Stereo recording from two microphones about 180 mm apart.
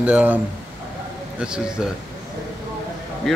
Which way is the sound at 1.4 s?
5° right (ahead or behind).